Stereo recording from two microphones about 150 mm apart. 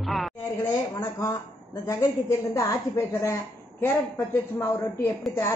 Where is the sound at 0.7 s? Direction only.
20° left (ahead or behind).